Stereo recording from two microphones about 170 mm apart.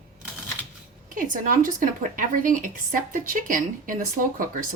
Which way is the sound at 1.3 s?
55° right (ahead or behind).